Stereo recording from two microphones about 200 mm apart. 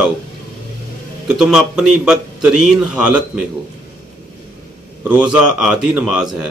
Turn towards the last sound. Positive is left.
turn(degrees=-5)  # may be behind; listen again after turning